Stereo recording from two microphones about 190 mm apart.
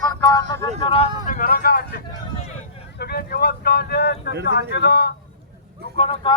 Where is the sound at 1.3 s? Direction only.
45° left (ahead or behind); by 4.3 s 60° left (ahead or behind).